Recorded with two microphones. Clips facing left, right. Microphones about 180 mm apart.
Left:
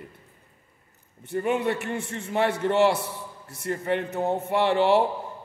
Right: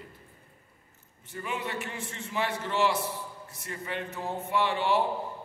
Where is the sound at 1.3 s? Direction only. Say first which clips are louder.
Left 10 dB; 60° left (ahead or behind).